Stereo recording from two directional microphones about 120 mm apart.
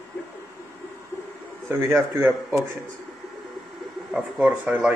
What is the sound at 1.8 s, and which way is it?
Speech, 20° right (ahead or behind).